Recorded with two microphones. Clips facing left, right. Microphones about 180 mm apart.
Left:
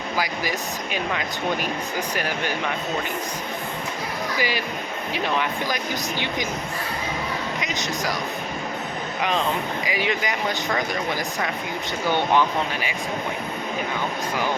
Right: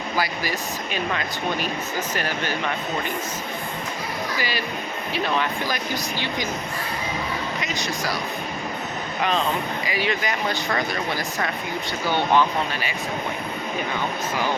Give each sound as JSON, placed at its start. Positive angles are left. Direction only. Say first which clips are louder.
{"t": 0.2, "sound": "speech", "louder": "even", "side_deg": 15}
{"t": 4.4, "sound": "speech", "louder": "left 2 dB", "side_deg": 15}
{"t": 7.6, "sound": "speech", "louder": "even", "side_deg": 20}
{"t": 9.8, "sound": "speech", "louder": "even", "side_deg": 15}